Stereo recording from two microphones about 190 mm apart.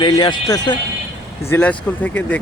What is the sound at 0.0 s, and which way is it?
Speech, 25° left (ahead or behind).